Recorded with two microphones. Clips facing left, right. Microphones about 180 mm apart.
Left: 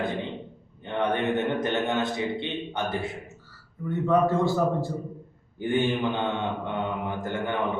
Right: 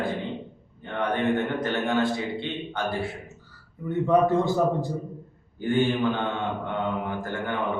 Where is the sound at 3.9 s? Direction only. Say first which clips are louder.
Right 2 dB; 15° right (ahead or behind).